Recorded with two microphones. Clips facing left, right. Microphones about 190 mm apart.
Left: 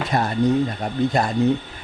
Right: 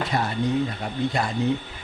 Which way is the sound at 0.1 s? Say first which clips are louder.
Left 6 dB; 45° left (ahead or behind).